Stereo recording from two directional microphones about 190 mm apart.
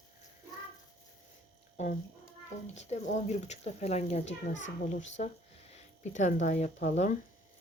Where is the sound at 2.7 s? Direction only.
35° left (ahead or behind).